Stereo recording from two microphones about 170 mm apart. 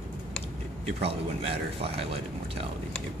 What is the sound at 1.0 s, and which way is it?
Speech, 35° right (ahead or behind).